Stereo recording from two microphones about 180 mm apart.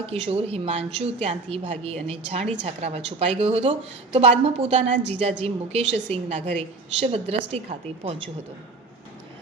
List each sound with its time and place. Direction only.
0.1 s a woman's voice: 35° right (ahead or behind)